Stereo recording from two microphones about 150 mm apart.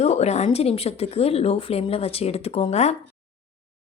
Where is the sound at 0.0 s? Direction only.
45° left (ahead or behind).